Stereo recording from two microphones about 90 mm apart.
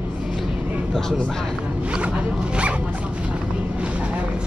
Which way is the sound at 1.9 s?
15° right (ahead or behind).